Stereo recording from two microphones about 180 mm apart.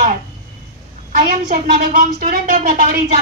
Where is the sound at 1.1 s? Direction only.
45° right (ahead or behind).